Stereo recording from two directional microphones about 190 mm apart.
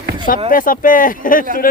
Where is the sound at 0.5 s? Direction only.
45° left (ahead or behind).